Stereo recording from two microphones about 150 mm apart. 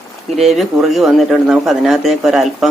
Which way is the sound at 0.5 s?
Centre (ahead or behind).